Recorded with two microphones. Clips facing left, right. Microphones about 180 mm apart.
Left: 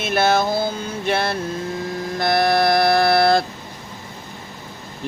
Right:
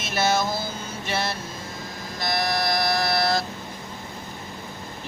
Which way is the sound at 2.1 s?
60° left (ahead or behind).